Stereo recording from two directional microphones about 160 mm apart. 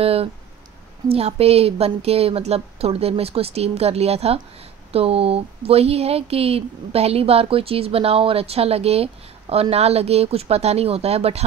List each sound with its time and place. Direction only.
0.0 s speech: 40° right (ahead or behind)